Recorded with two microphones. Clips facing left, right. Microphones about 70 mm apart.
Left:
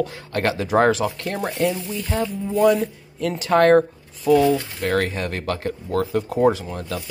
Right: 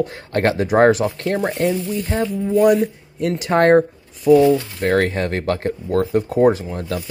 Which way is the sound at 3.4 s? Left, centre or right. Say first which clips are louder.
Right 1 dB; right.